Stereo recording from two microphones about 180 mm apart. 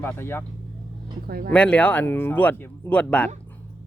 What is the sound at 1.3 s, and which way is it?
Speech, 60° right (ahead or behind).